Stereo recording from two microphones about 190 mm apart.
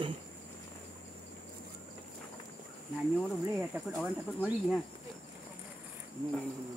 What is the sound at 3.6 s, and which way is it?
Speech, 5° right (ahead or behind).